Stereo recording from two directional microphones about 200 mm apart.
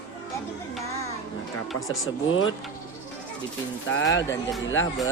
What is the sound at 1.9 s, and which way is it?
Speech, 80° left.